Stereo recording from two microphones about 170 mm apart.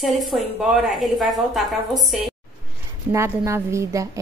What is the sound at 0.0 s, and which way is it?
A woman's voice, centre (ahead or behind).